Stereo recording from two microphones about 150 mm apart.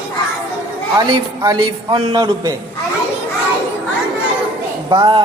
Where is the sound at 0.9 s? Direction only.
35° right (ahead or behind).